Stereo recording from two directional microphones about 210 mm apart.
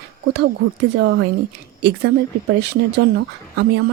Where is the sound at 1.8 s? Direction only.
50° right (ahead or behind).